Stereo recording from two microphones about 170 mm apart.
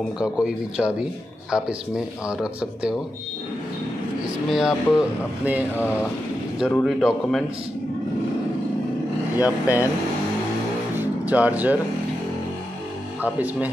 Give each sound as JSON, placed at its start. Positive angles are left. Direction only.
{"t": 0.2, "sound": "speech", "side_deg": -5}
{"t": 4.5, "sound": "speech", "side_deg": -5}
{"t": 6.7, "sound": "speech", "side_deg": 0}
{"t": 9.4, "sound": "speech", "side_deg": -10}
{"t": 11.0, "sound": "music", "side_deg": -10}
{"t": 13.2, "sound": "speech", "side_deg": -10}